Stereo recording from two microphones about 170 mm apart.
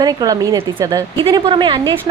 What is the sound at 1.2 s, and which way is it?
Speech, 30° right (ahead or behind).